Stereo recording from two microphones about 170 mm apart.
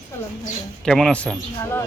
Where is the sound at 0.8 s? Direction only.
Centre (ahead or behind).